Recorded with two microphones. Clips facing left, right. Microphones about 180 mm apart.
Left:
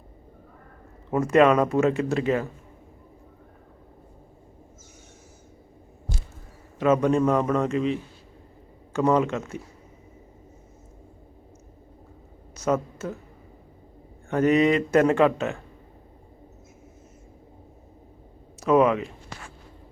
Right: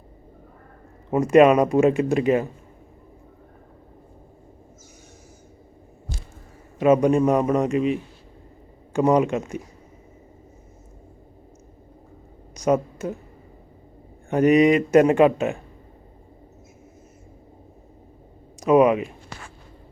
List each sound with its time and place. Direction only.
1.1 s a man's voice: 15° right (ahead or behind)
6.7 s a man's voice: 15° right (ahead or behind)
12.5 s a woman's voice: 15° right (ahead or behind)
14.3 s a man's voice: 15° right (ahead or behind)
18.6 s a man's voice: 15° right (ahead or behind)